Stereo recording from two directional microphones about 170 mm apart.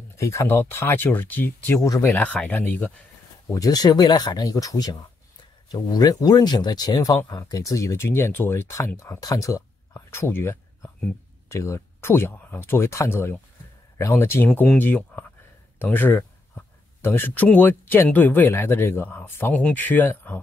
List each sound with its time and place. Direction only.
0.2 s speech: 15° left (ahead or behind)
3.5 s speech: 20° left (ahead or behind)